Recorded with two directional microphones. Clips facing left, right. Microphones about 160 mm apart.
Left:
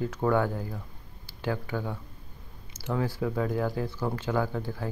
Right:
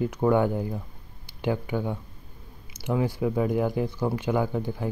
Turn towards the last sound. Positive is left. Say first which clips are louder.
# right 3 dB
turn(degrees=-15)  # may be behind; listen again after turning